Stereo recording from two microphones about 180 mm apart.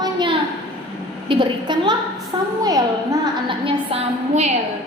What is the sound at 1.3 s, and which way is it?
A woman's voice, 25° right (ahead or behind).